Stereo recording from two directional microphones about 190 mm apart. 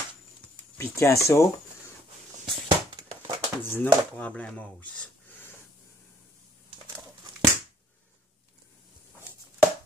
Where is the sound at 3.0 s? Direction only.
25° right (ahead or behind).